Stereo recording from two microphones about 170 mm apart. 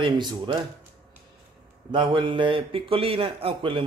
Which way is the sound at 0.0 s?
25° right (ahead or behind).